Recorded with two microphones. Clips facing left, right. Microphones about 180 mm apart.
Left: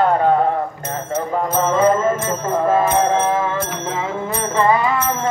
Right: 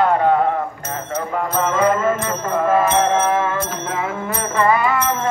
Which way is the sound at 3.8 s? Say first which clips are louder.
Left 1 dB; 25° left (ahead or behind).